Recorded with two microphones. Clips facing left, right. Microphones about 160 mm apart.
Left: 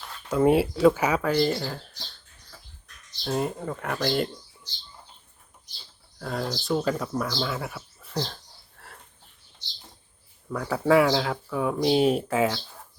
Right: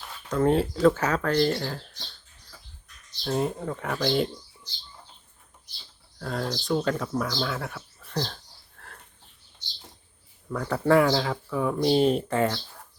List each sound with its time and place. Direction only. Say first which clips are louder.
0.3 s speech: left 2 dB; 10° left (ahead or behind)
3.2 s speech: right 1 dB; centre (ahead or behind)
6.1 s speech: even; 5° left (ahead or behind)
8.8 s sniff: even; centre (ahead or behind)
10.5 s speech: even; centre (ahead or behind)